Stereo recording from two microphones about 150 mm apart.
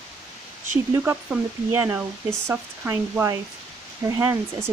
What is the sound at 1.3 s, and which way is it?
Speech, 15° right (ahead or behind).